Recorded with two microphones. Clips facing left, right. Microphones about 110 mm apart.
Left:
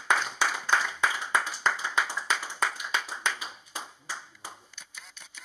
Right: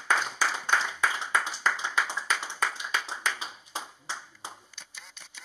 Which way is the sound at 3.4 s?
25° right (ahead or behind).